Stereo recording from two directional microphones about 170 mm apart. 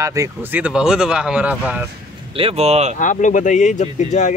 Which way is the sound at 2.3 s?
35° right (ahead or behind).